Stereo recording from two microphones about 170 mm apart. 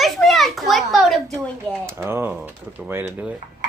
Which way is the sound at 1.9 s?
15° right (ahead or behind).